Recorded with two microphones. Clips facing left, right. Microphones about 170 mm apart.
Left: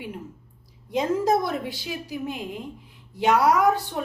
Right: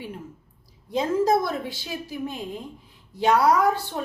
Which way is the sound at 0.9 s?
15° left (ahead or behind).